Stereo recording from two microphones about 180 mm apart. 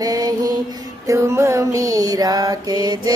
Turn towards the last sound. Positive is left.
turn(degrees=-20)  # may be behind; listen again after turning